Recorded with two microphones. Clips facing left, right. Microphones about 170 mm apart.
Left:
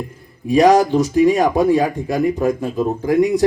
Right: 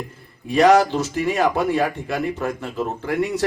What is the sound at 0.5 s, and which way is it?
Speech, 15° left (ahead or behind).